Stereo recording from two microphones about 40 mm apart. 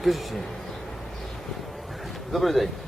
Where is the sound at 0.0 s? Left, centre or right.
Centre.